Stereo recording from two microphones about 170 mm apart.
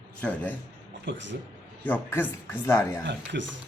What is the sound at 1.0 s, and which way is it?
Speech, 90° right.